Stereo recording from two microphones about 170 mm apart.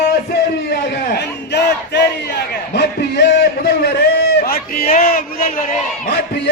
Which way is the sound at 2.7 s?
85° left.